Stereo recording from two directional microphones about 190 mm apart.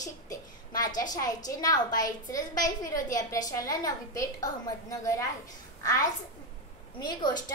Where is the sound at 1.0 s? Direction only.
20° left (ahead or behind).